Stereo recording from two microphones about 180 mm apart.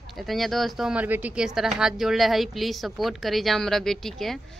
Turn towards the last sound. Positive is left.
turn(degrees=0)  # may be behind; listen again after turning